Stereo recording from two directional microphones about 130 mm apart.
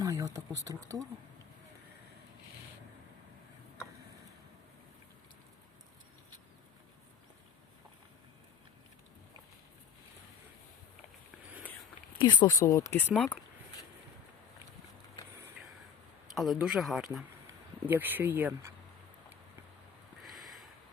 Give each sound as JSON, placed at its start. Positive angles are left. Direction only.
{"t": 0.0, "sound": "a sound", "side_deg": -25}
{"t": 0.3, "sound": "speech", "side_deg": -25}
{"t": 12.1, "sound": "speech", "side_deg": 35}
{"t": 16.3, "sound": "speech", "side_deg": 0}
{"t": 17.8, "sound": "speech", "side_deg": -15}
{"t": 20.2, "sound": "a sound", "side_deg": 0}